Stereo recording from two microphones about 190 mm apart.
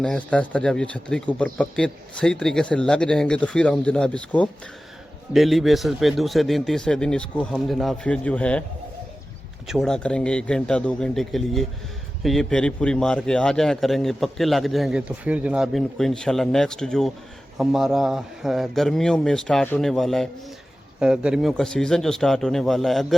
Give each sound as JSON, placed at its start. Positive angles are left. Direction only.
{"t": 0.0, "sound": "a man's voice", "side_deg": 5}
{"t": 9.6, "sound": "a man's voice", "side_deg": 0}